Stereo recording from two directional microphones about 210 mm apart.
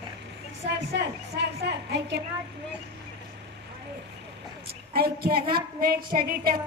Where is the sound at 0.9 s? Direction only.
50° right (ahead or behind).